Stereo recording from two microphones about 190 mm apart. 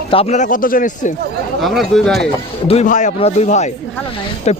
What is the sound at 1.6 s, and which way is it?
Speech, centre (ahead or behind).